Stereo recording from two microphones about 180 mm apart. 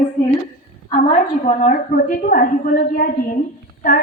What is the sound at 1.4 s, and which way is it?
A woman's voice, 45° left (ahead or behind).